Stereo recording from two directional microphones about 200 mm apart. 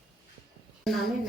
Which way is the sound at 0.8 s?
Centre (ahead or behind).